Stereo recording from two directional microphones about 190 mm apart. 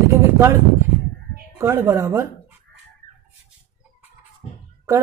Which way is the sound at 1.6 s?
15° right (ahead or behind).